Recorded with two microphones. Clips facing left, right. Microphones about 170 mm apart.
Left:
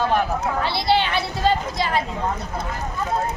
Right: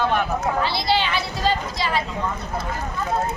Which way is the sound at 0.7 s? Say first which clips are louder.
Left 2 dB; 60° left (ahead or behind).